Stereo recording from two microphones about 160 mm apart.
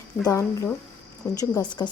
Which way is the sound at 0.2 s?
20° left (ahead or behind).